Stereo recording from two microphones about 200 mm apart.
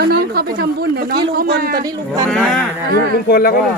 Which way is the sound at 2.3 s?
5° left (ahead or behind).